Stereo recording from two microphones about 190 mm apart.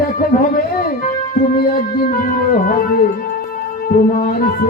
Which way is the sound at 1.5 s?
50° left (ahead or behind).